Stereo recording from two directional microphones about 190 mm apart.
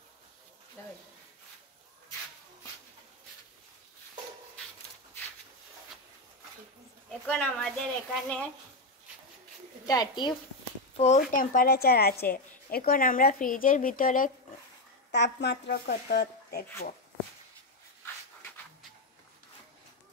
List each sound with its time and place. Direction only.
7.2 s a woman's voice: 5° left (ahead or behind)
9.8 s a woman's voice: 20° left (ahead or behind)
11.0 s a woman's voice: 40° left (ahead or behind)
15.0 s speech: 65° left (ahead or behind)